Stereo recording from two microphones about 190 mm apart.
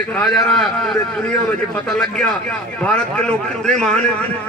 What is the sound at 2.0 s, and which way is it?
A man's voice, centre (ahead or behind).